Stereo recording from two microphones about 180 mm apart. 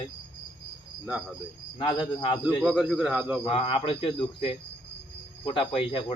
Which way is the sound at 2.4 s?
5° right (ahead or behind).